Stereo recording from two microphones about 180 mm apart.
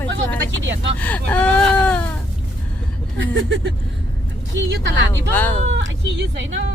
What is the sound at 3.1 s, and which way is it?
Speech, 85° right.